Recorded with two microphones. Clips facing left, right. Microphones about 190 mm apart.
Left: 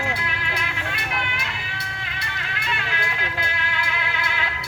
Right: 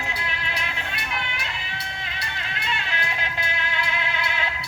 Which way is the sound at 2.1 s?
25° right (ahead or behind).